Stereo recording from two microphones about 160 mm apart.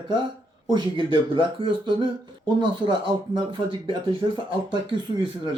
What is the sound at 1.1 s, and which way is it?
Speech, 30° right (ahead or behind).